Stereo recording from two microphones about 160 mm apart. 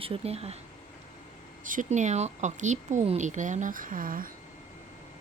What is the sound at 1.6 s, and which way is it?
Speech, 55° right (ahead or behind).